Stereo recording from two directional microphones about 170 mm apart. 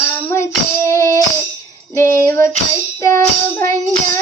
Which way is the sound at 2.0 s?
15° left (ahead or behind).